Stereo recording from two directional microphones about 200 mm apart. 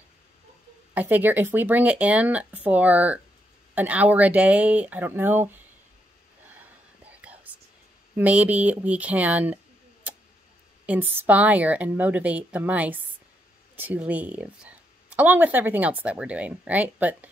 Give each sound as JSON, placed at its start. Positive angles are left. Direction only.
{"t": 0.9, "sound": "speech", "side_deg": -10}
{"t": 6.5, "sound": "whispering", "side_deg": -10}
{"t": 8.2, "sound": "speech", "side_deg": -10}
{"t": 10.9, "sound": "speech", "side_deg": -10}